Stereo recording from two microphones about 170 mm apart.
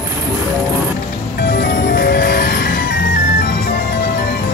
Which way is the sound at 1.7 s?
50° left (ahead or behind).